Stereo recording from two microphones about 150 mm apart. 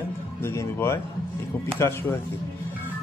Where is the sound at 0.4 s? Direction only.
15° left (ahead or behind).